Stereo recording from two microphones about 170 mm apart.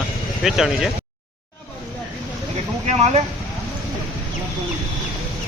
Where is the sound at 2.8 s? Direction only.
40° right (ahead or behind).